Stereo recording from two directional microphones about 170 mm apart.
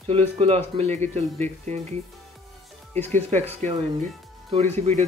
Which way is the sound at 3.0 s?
10° left (ahead or behind).